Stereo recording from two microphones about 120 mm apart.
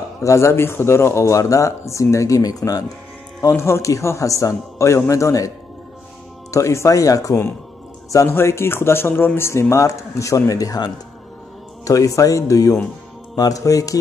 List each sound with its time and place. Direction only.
0.2 s speech: 25° left (ahead or behind)
6.5 s speech: 25° left (ahead or behind)